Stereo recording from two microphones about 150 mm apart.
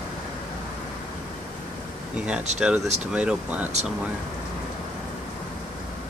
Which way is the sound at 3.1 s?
5° right (ahead or behind).